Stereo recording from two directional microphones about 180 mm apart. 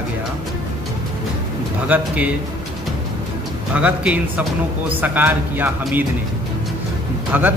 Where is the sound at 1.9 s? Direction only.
10° right (ahead or behind).